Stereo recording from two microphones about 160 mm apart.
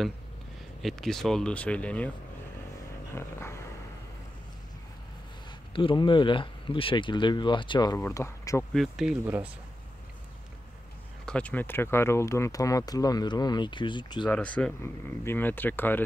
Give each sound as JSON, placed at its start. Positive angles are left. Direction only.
{"t": 0.8, "sound": "speech", "side_deg": 0}
{"t": 3.2, "sound": "speech", "side_deg": 15}
{"t": 5.7, "sound": "speech", "side_deg": 30}
{"t": 8.7, "sound": "speech", "side_deg": 0}
{"t": 11.2, "sound": "speech", "side_deg": 10}
{"t": 14.3, "sound": "speech", "side_deg": 10}